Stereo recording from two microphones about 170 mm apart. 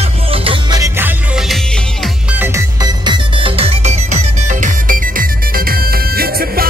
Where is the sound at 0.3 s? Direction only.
30° right (ahead or behind).